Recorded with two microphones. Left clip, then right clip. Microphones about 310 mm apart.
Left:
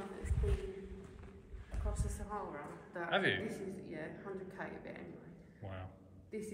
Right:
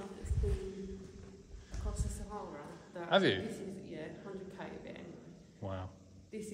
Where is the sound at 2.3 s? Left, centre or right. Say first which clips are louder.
Left 3 dB; centre.